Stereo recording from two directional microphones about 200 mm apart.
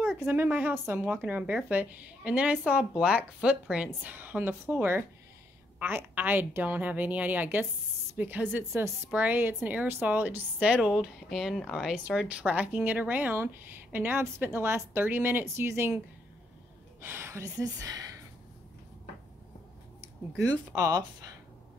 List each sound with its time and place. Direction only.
0.1 s a woman's voice: 5° right (ahead or behind)
17.0 s a woman's voice: 10° right (ahead or behind)
20.3 s a woman's voice: 15° right (ahead or behind)